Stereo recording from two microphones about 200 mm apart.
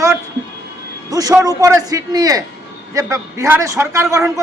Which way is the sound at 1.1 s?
15° right (ahead or behind).